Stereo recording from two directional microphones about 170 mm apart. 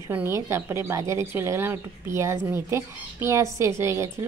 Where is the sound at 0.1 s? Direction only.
15° right (ahead or behind).